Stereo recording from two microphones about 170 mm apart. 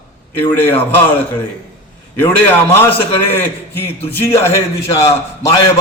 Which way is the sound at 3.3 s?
10° left (ahead or behind).